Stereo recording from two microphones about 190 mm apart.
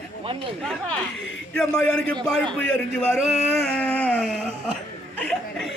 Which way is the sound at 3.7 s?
10° left (ahead or behind).